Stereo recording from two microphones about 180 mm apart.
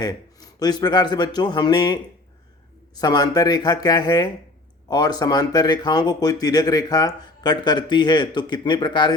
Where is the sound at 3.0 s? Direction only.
20° left (ahead or behind).